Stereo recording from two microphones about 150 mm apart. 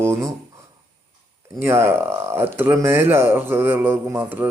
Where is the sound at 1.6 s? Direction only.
15° right (ahead or behind).